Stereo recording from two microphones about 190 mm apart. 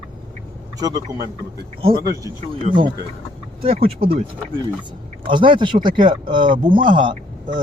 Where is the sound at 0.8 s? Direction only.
20° right (ahead or behind).